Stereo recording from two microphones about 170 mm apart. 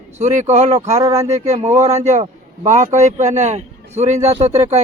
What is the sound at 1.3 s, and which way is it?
A man's voice, 40° right (ahead or behind).